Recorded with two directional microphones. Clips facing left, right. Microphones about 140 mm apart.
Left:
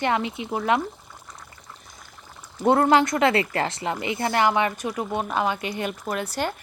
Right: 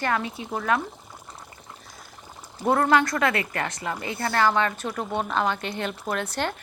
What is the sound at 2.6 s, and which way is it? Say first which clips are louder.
A woman's voice: left 3 dB; 20° left (ahead or behind).